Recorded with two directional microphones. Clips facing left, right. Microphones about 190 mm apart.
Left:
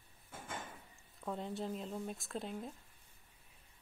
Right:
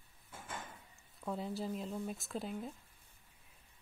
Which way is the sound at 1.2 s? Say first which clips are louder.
Right 1 dB; centre (ahead or behind).